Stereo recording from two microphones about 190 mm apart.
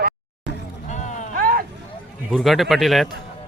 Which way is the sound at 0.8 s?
40° left (ahead or behind).